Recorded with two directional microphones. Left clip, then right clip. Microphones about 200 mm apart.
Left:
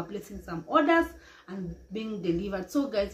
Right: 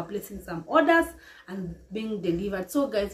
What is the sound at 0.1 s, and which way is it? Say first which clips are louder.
Speech: right 3 dB; 10° right (ahead or behind).